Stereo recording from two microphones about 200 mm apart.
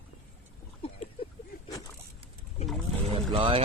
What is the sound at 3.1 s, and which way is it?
Boat, 30° right (ahead or behind).